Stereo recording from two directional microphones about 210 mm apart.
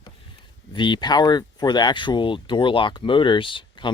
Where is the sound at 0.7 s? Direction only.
20° left (ahead or behind).